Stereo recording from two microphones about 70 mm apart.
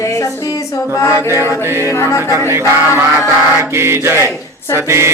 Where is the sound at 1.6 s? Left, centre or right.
Right.